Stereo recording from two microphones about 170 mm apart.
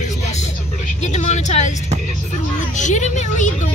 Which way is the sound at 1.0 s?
45° left (ahead or behind).